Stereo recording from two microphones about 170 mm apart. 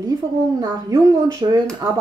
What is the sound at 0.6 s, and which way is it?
A woman's voice, 20° right (ahead or behind).